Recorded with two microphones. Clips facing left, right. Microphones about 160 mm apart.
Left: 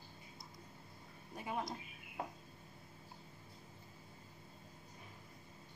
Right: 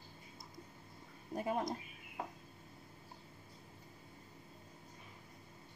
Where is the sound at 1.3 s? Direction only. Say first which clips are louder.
Right 5 dB; 45° right (ahead or behind).